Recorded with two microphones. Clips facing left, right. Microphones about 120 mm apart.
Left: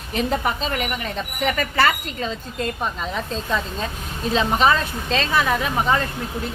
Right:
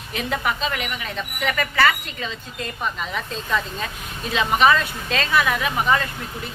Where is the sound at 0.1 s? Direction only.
35° left (ahead or behind).